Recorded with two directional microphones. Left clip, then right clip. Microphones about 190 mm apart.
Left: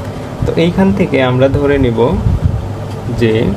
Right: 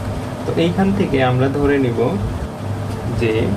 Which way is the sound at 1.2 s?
60° left (ahead or behind).